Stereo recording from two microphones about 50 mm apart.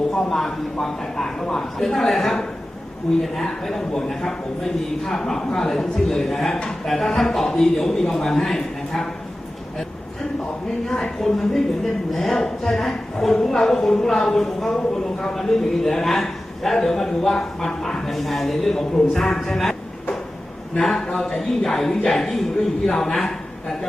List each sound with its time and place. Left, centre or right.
0.1 s a man's voice: centre
10.8 s a man's voice: centre
20.7 s a man's voice: centre